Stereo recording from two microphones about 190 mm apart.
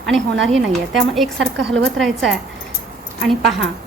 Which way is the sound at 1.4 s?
75° right (ahead or behind).